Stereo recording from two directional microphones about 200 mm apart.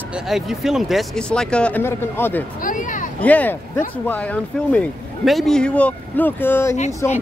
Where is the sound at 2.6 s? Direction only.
40° left (ahead or behind).